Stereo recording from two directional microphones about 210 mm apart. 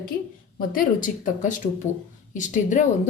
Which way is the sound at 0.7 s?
40° left (ahead or behind).